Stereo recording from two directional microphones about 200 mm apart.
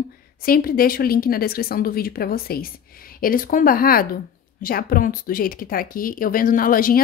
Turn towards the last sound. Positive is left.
turn(degrees=45)  # may be behind; listen again after turning